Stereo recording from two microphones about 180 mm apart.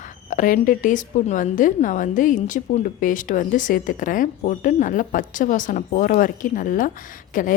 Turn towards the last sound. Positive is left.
turn(degrees=45)  # may be behind; listen again after turning